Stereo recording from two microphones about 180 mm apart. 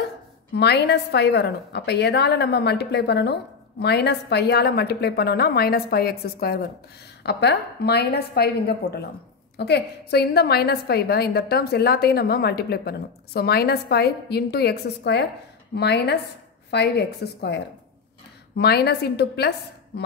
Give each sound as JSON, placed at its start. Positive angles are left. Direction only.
{"t": 0.6, "sound": "a woman's voice", "side_deg": 65}